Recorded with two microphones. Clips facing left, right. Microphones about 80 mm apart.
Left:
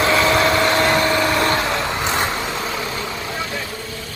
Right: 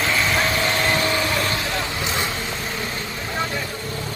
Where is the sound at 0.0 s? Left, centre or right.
Left.